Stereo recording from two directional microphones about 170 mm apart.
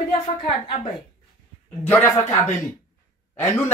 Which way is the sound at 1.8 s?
15° left (ahead or behind).